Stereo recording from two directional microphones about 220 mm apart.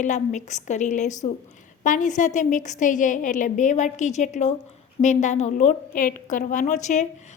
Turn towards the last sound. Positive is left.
turn(degrees=35)  # may be behind; listen again after turning